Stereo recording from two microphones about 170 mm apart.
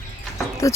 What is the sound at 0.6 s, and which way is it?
Speech, 20° left (ahead or behind).